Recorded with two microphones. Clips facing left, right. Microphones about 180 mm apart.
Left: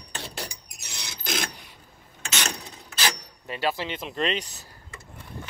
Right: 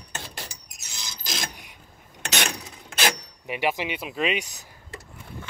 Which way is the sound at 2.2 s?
70° right (ahead or behind).